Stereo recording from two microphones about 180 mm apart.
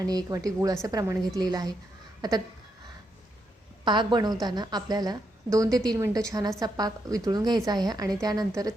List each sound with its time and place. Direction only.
0.0 s a woman's voice: 20° right (ahead or behind)
3.8 s a woman's voice: 25° right (ahead or behind)